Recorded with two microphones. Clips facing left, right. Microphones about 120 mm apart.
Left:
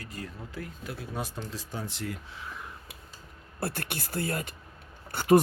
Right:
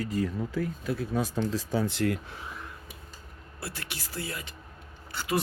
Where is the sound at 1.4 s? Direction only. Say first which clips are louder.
Right 9 dB; 90° right; by 2.3 s 70° right (ahead or behind).